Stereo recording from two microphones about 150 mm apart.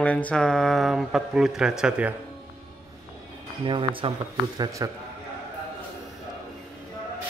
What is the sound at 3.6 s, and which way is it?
Speech, 35° right (ahead or behind).